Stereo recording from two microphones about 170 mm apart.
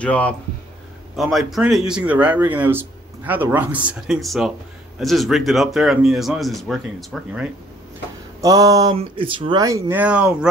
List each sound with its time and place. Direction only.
0.0 s speech: 10° left (ahead or behind)
8.4 s speech: 20° right (ahead or behind)